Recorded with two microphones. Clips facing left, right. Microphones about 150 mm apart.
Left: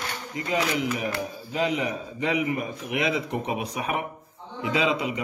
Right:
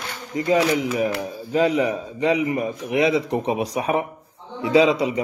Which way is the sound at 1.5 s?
40° right (ahead or behind).